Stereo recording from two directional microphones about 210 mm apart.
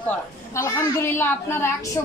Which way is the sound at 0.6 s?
15° left (ahead or behind).